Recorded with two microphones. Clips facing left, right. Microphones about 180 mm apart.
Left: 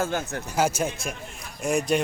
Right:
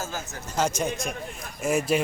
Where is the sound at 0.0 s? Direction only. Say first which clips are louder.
Left 7 dB; 60° left (ahead or behind).